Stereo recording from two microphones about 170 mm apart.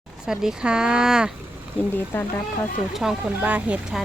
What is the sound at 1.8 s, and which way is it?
Speech, 10° left (ahead or behind).